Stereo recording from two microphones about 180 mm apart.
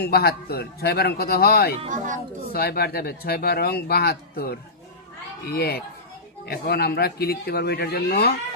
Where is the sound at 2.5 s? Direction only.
60° left (ahead or behind).